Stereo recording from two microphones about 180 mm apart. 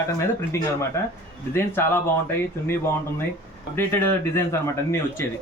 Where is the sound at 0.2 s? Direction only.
15° left (ahead or behind).